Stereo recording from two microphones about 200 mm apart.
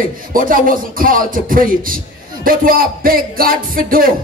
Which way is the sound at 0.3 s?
45° right (ahead or behind).